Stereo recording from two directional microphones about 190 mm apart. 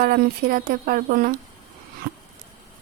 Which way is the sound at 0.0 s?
50° right (ahead or behind).